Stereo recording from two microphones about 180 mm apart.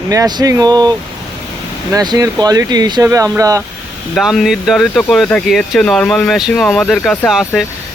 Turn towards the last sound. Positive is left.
turn(degrees=0)  # may be behind; listen again after turning